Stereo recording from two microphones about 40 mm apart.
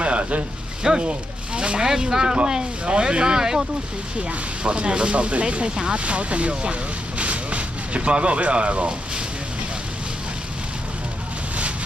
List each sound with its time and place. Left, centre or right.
0.0 s a sound: right
1.0 s speech: right
4.6 s speech: right